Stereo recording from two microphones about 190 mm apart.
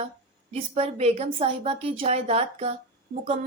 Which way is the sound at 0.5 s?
35° right (ahead or behind).